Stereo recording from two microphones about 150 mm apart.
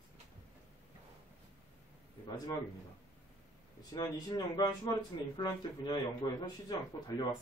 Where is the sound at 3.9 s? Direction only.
25° left (ahead or behind).